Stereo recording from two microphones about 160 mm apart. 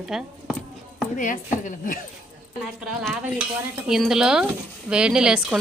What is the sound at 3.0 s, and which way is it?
A woman's voice, 10° right (ahead or behind).